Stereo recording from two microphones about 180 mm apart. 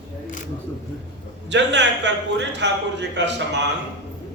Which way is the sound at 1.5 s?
75° right (ahead or behind).